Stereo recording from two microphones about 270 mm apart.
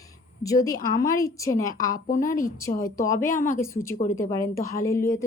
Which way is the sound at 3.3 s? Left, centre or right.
Left.